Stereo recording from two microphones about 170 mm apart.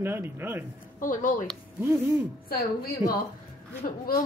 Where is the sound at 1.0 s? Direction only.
50° left (ahead or behind).